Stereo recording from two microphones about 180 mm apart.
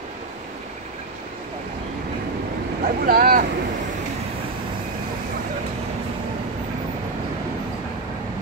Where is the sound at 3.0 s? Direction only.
55° right (ahead or behind).